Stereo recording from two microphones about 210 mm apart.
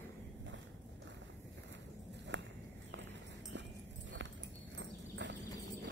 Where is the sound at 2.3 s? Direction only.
60° right (ahead or behind).